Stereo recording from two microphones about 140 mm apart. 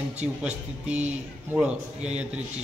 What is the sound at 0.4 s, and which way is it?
A man's voice, 10° right (ahead or behind).